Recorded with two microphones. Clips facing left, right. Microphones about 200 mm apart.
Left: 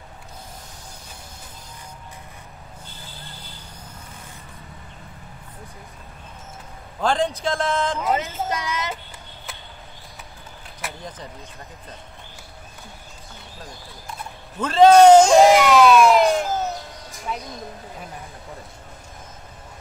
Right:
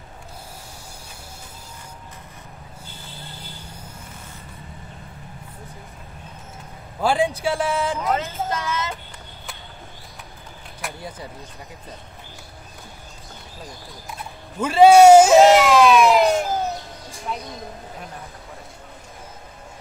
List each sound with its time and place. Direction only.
7.0 s a man's voice: 10° right (ahead or behind)
8.5 s child singing: 15° left (ahead or behind)
11.0 s a man's voice: 10° right (ahead or behind)
14.6 s a sound: 10° right (ahead or behind)
17.3 s speech: centre (ahead or behind)